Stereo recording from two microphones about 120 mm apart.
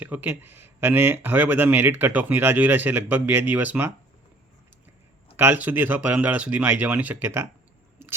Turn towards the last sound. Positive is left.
turn(degrees=-20)  # may be behind; listen again after turning